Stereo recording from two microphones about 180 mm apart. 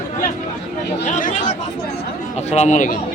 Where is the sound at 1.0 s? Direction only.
45° left (ahead or behind).